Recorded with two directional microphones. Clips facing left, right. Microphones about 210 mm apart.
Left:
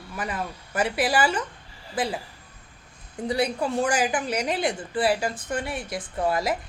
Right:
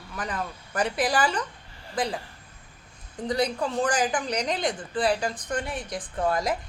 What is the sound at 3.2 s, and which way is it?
A woman's voice, 10° left (ahead or behind).